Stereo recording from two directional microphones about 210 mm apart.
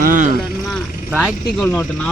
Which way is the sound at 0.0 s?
40° right (ahead or behind).